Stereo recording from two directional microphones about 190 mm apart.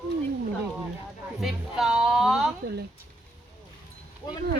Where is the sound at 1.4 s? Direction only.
Centre (ahead or behind).